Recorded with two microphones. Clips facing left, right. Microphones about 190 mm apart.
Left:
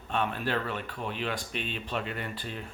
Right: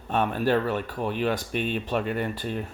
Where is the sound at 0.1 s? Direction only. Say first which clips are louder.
Right 7 dB; 45° right (ahead or behind).